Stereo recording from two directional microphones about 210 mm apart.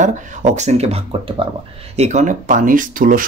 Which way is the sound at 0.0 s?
35° right (ahead or behind).